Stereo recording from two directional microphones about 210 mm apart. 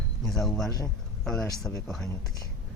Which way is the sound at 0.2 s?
Centre (ahead or behind).